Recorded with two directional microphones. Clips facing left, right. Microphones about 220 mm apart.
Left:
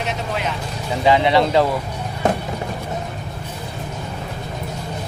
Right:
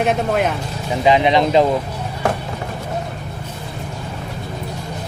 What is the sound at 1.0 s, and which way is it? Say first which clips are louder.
Speech: right 1 dB; 20° right (ahead or behind).